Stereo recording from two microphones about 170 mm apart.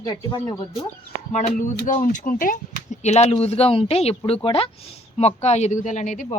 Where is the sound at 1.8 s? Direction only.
50° left (ahead or behind).